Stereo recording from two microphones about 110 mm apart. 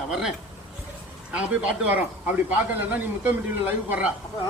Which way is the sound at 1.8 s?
15° right (ahead or behind).